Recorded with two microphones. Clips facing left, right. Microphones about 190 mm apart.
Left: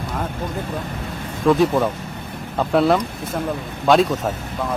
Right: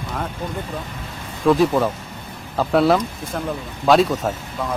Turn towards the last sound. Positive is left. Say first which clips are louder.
# even
turn(degrees=0)  # may be behind; listen again after turning